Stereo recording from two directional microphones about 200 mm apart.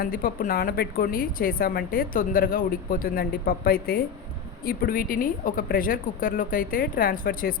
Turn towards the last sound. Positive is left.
turn(degrees=45)  # may be behind; listen again after turning